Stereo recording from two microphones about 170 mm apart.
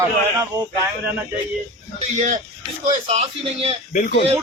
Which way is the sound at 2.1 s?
45° right (ahead or behind).